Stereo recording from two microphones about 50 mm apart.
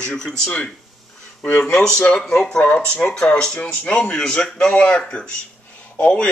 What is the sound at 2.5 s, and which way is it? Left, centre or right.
Speech, left.